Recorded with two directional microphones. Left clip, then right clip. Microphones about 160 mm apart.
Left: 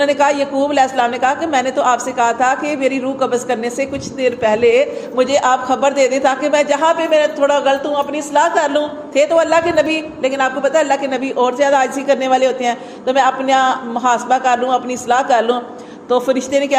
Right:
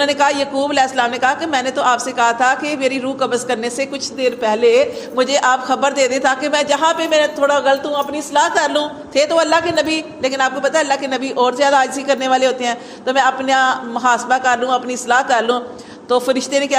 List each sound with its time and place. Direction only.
0.0 s a woman's voice: 30° right (ahead or behind)